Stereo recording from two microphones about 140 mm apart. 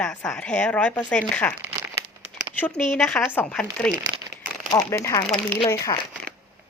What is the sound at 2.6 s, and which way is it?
A woman's voice, 5° left (ahead or behind).